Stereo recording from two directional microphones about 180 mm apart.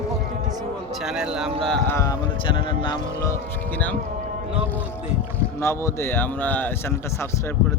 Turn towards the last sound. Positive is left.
turn(degrees=10)  # may be behind; listen again after turning